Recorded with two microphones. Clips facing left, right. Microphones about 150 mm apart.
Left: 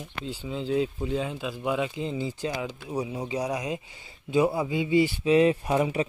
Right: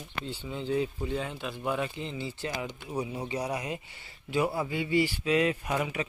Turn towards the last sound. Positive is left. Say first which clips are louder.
# left 6 dB
turn(degrees=30)  # may be behind; listen again after turning